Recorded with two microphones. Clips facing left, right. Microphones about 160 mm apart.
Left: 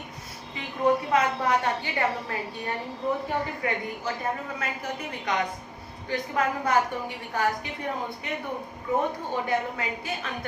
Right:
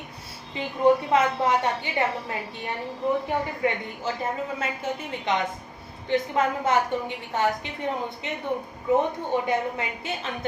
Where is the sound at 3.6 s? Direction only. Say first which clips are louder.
Right 3 dB; 25° right (ahead or behind).